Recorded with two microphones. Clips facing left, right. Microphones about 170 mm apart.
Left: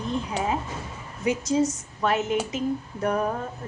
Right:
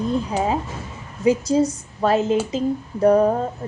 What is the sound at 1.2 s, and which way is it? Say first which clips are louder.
A woman's voice: right 6 dB; 30° right (ahead or behind).